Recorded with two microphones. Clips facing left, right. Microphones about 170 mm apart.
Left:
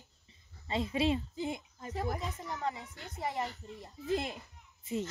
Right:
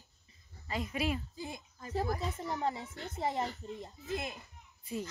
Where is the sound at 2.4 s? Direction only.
30° right (ahead or behind).